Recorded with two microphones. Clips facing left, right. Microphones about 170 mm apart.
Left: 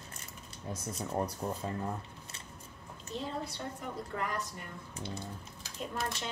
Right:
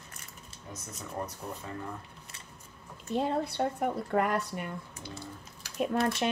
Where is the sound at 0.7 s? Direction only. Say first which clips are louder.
Left 4 dB; 30° left (ahead or behind).